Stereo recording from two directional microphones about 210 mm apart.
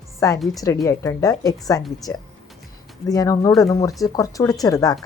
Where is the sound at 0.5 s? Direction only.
15° left (ahead or behind).